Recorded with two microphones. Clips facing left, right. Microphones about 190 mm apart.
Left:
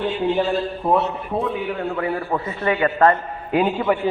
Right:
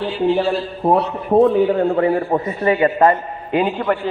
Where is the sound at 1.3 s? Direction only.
50° right (ahead or behind).